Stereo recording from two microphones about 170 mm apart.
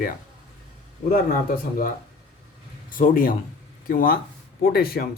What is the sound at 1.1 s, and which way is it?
Speech, 55° left (ahead or behind).